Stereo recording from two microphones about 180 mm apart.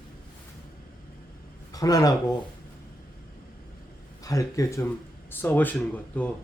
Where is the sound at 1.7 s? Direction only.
20° left (ahead or behind).